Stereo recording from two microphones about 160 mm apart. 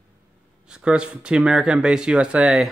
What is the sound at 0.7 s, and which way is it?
Speech, 5° right (ahead or behind).